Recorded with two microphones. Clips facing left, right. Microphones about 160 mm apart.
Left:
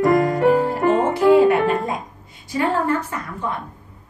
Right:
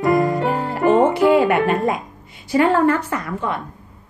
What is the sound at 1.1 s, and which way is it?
Music, 70° right (ahead or behind).